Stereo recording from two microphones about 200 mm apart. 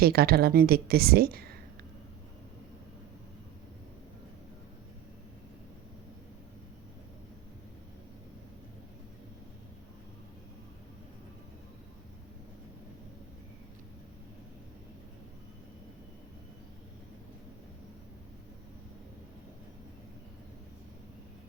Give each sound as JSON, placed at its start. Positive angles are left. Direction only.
{"t": 0.0, "sound": "a woman's voice", "side_deg": -50}